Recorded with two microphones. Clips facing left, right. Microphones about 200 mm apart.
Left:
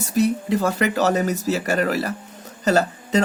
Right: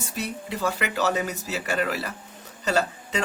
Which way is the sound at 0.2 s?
40° left (ahead or behind).